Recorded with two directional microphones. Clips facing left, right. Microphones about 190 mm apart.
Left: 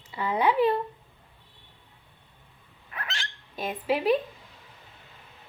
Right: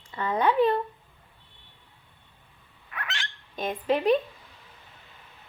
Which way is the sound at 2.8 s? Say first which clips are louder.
Right 1 dB; 30° left (ahead or behind).